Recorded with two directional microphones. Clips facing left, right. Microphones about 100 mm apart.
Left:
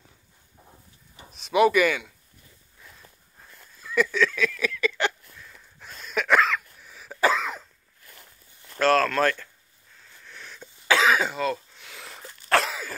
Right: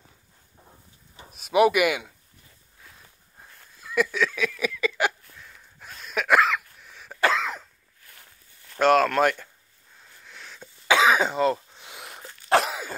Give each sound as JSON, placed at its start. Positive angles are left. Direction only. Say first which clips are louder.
{"t": 1.3, "sound": "speech", "louder": "even", "side_deg": -10}
{"t": 3.3, "sound": "a sound", "louder": "right 2 dB", "side_deg": -5}
{"t": 8.7, "sound": "speech", "louder": "right 2 dB", "side_deg": -15}
{"t": 10.0, "sound": "sniff", "louder": "left 1 dB", "side_deg": -5}
{"t": 10.9, "sound": "throat clearing", "louder": "right 2 dB", "side_deg": -15}